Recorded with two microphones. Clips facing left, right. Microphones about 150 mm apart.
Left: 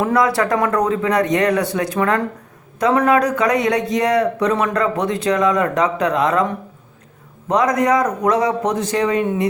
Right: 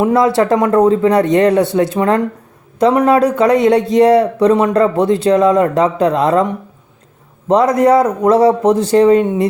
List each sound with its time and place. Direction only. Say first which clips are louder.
0.0 s a man's voice: right 5 dB; 25° right (ahead or behind)
7.4 s a man's voice: right 6 dB; 30° right (ahead or behind)